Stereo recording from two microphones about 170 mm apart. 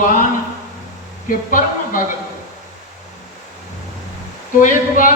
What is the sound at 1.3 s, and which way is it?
Speech, 55° left (ahead or behind).